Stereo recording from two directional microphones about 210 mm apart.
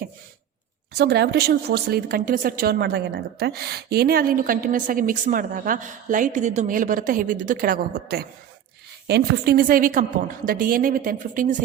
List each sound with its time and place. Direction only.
0.9 s a woman's voice: 50° right (ahead or behind)